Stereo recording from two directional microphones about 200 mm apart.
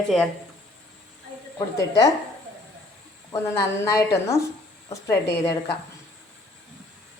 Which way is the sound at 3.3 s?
15° left (ahead or behind).